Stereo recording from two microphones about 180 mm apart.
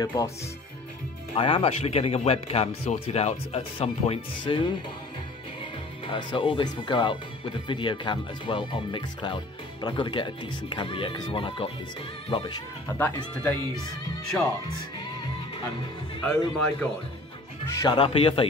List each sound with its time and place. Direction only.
0.0 s speech: 20° left (ahead or behind)
1.3 s speech: 30° left (ahead or behind)
6.0 s speech: 25° left (ahead or behind)
12.9 s speech: 10° left (ahead or behind)
16.3 s speech: 5° left (ahead or behind)
17.6 s speech: 20° left (ahead or behind)